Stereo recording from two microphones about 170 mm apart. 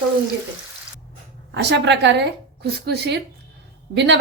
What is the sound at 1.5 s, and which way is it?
A woman's voice, 90° right.